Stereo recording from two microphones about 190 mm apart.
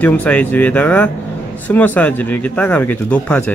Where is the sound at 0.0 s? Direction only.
10° left (ahead or behind).